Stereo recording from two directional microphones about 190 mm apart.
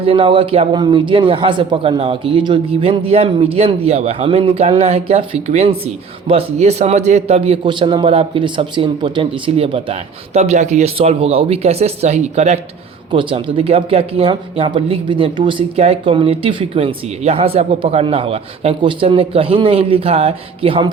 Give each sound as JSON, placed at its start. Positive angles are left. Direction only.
{"t": 0.0, "sound": "a man's voice", "side_deg": -25}